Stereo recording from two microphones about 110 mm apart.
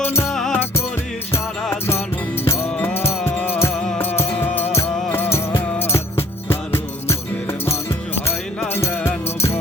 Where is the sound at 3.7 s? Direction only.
5° left (ahead or behind).